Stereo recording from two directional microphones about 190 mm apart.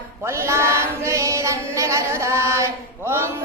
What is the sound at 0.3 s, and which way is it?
Chant, 15° right (ahead or behind).